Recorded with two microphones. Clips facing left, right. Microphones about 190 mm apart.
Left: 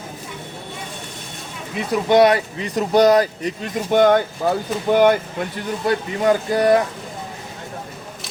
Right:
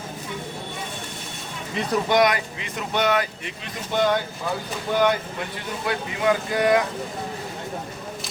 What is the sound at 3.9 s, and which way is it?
Speech, 55° left (ahead or behind).